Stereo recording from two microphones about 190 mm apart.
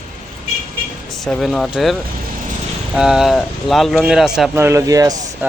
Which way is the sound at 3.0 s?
Centre (ahead or behind).